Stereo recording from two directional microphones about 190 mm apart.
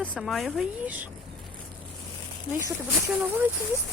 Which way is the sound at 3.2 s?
10° right (ahead or behind).